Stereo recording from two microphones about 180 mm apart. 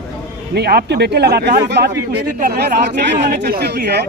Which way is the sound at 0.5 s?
65° right (ahead or behind).